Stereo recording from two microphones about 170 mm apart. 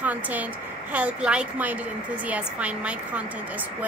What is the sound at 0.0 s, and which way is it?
A woman's voice, 10° right (ahead or behind).